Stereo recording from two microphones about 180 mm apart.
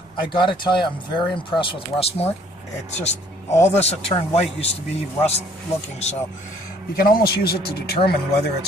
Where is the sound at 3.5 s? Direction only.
15° left (ahead or behind).